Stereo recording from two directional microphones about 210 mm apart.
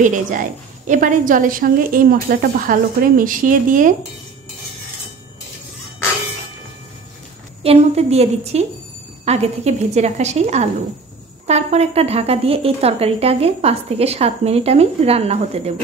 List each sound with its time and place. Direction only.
0.0 s a woman's voice: 40° right (ahead or behind)
7.6 s a woman's voice: 30° right (ahead or behind)